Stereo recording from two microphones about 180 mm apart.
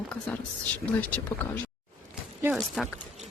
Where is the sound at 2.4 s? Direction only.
10° right (ahead or behind).